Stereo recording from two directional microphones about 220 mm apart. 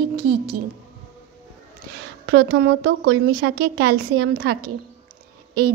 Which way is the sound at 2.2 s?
55° right (ahead or behind).